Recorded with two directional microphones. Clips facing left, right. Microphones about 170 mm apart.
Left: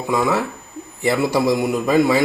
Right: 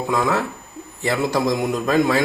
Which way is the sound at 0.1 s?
10° left (ahead or behind).